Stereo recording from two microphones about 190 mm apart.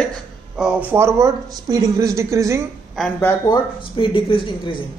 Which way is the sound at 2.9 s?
5° left (ahead or behind).